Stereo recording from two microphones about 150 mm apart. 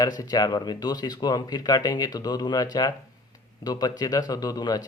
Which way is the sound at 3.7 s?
25° left (ahead or behind).